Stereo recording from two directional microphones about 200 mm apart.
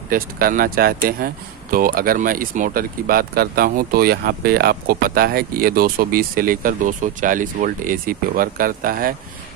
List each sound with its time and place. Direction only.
0.1 s speech: 45° right (ahead or behind)